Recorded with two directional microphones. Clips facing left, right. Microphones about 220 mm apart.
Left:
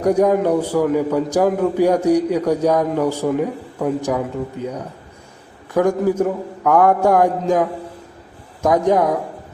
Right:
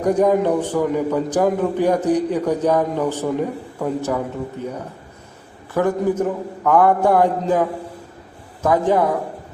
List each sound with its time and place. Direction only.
0.0 s a man's voice: 10° left (ahead or behind)
5.7 s a man's voice: 15° left (ahead or behind)
8.6 s a man's voice: 15° left (ahead or behind)